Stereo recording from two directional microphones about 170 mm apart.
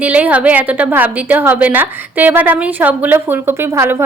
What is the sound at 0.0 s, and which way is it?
A woman's voice, 10° right (ahead or behind).